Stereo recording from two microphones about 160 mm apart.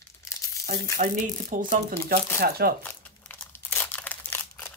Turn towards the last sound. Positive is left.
turn(degrees=10)  # may be behind; listen again after turning